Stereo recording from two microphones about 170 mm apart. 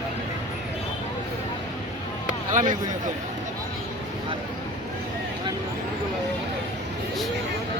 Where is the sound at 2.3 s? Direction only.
50° right (ahead or behind).